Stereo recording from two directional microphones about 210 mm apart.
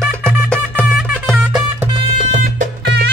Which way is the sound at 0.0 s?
5° right (ahead or behind).